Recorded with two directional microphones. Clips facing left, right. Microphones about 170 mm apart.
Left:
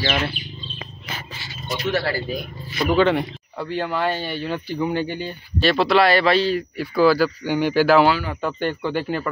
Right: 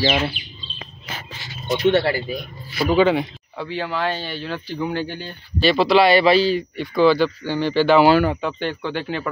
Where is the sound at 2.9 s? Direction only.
5° right (ahead or behind).